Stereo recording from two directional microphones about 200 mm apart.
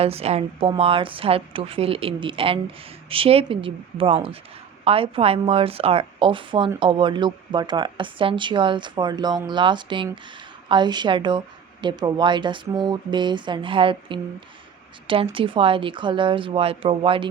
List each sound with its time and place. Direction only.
0.0 s a woman's voice: 30° right (ahead or behind)